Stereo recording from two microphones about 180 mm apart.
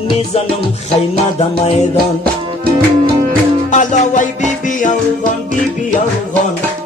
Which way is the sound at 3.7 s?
40° left (ahead or behind).